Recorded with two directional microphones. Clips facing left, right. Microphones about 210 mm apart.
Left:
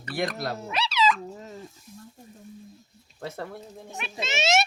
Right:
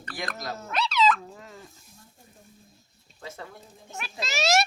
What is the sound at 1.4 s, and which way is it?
Dog, 25° left (ahead or behind).